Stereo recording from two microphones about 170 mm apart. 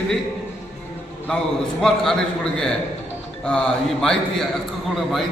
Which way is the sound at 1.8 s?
5° left (ahead or behind).